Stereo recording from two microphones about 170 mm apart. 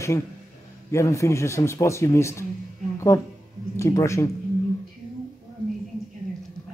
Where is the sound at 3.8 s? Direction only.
15° left (ahead or behind).